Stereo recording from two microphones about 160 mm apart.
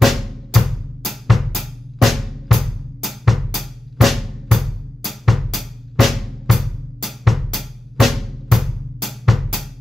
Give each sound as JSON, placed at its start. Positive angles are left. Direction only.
{"t": 0.0, "sound": "drum", "side_deg": 0}